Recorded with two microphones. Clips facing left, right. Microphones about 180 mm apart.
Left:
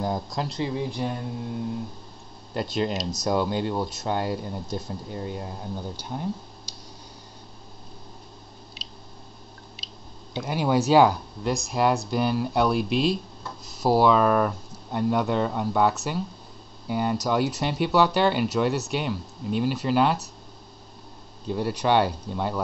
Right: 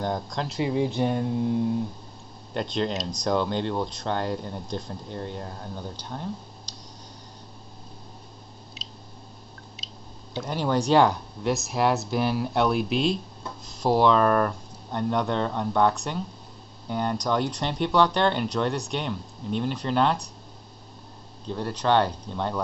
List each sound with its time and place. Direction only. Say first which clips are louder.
0.0 s speech: left 1 dB; 5° left (ahead or behind)
0.6 s speech: right 6 dB; 20° right (ahead or behind)
2.5 s speech: left 1 dB; 5° left (ahead or behind)
10.3 s speech: left 2 dB; 10° left (ahead or behind)
21.5 s speech: left 1 dB; 10° left (ahead or behind)